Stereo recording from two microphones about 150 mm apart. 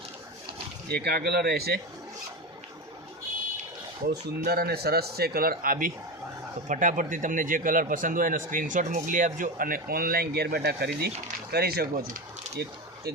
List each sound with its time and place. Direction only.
0.4 s speech: 90° right
4.4 s speech: 90° right; by 5.9 s 75° right (ahead or behind)
6.7 s speech: 60° right (ahead or behind); by 12.6 s 90° right